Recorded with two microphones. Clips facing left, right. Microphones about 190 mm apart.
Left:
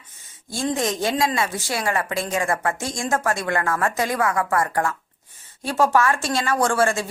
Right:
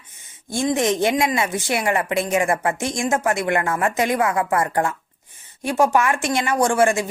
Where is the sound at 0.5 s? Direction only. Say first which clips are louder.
Right 4 dB; 15° right (ahead or behind).